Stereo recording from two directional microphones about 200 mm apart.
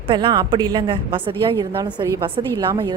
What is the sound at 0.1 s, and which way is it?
A woman's voice, 25° right (ahead or behind).